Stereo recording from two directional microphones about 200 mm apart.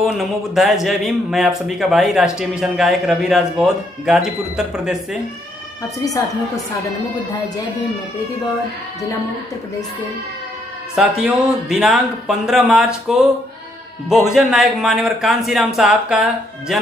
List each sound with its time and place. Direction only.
0.0 s speech: centre (ahead or behind)
5.9 s speech: 15° left (ahead or behind)
11.0 s speech: centre (ahead or behind)